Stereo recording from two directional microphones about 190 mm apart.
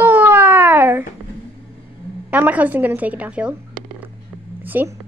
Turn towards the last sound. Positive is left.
turn(degrees=-10)  # may be behind; listen again after turning